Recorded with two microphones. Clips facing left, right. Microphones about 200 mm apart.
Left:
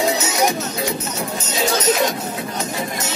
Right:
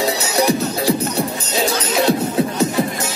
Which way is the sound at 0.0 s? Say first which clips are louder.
Right 1 dB; 35° right (ahead or behind).